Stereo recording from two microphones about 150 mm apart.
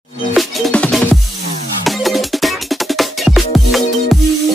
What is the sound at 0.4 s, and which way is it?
Music, centre (ahead or behind).